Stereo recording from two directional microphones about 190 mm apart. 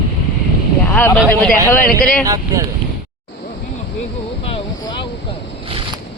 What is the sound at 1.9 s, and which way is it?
Speech, 50° left (ahead or behind).